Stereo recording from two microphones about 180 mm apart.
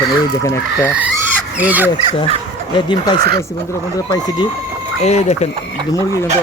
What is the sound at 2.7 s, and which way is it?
Speech, 25° left (ahead or behind).